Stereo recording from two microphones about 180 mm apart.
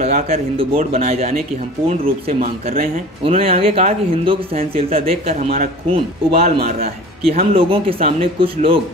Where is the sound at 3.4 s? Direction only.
35° right (ahead or behind).